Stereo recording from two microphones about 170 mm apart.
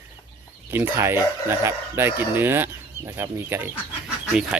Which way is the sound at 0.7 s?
15° right (ahead or behind).